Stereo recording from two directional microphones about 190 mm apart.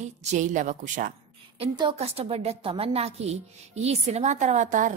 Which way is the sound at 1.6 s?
30° right (ahead or behind).